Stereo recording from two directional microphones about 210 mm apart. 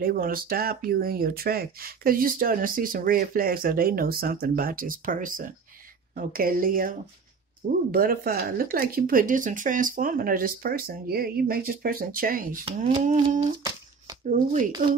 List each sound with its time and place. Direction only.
0.0 s speech: 45° right (ahead or behind)
12.7 s speech: 25° right (ahead or behind)
13.4 s humming: 20° right (ahead or behind)
14.3 s speech: 35° right (ahead or behind)
14.7 s speech: 20° right (ahead or behind)